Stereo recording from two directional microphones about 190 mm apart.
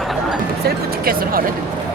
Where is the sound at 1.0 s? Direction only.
50° right (ahead or behind).